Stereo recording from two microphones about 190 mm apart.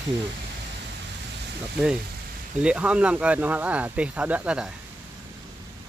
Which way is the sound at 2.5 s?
5° right (ahead or behind).